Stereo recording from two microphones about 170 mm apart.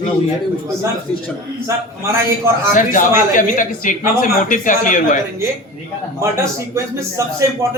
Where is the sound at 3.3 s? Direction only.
50° left (ahead or behind).